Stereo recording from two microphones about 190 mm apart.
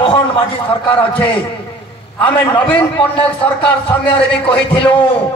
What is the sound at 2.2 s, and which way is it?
A man's voice, 25° left (ahead or behind).